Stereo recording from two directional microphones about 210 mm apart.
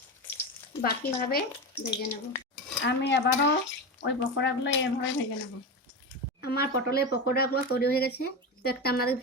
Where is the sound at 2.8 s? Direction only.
55° left (ahead or behind).